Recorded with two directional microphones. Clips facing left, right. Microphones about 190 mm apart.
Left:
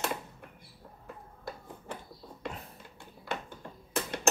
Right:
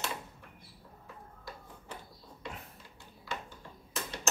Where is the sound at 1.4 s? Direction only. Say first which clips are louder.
Left 6 dB; 55° left (ahead or behind).